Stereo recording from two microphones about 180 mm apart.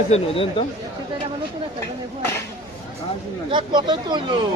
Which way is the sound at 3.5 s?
25° right (ahead or behind).